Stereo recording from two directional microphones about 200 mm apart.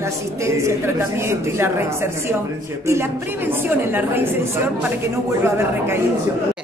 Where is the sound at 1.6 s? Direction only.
10° right (ahead or behind).